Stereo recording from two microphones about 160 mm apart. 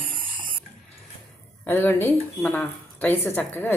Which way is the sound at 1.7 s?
15° left (ahead or behind).